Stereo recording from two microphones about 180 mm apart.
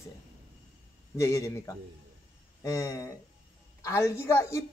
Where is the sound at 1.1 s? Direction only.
20° left (ahead or behind).